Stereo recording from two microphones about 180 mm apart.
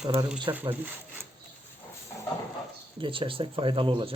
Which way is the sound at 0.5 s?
10° right (ahead or behind).